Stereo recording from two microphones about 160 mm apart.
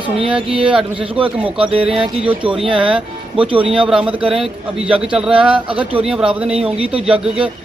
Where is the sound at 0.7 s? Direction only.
5° right (ahead or behind).